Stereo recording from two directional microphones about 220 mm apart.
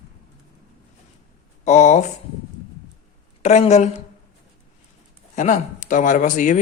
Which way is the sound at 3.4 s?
30° left (ahead or behind).